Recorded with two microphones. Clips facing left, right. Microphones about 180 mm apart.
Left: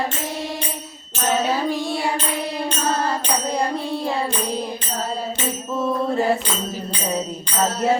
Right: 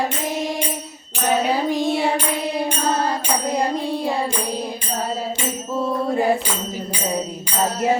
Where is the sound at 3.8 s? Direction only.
15° right (ahead or behind).